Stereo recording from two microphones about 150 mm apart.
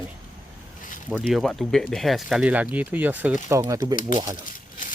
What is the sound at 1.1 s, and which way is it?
Speech, 5° right (ahead or behind).